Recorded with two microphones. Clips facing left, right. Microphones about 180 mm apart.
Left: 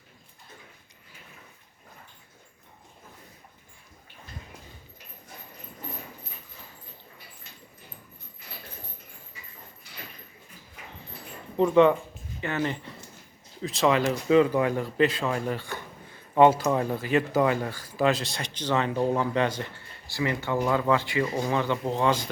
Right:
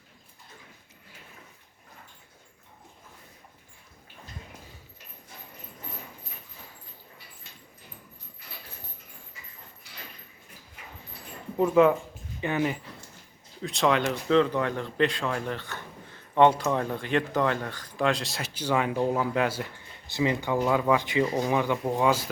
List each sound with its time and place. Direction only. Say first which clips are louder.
11.5 s speech: left 1 dB; 5° right (ahead or behind)
12.4 s speech: right 2 dB; 15° right (ahead or behind)
20.1 s speech: right 2 dB; 20° right (ahead or behind)